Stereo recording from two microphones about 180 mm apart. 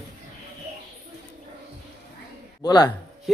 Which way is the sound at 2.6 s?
20° left (ahead or behind).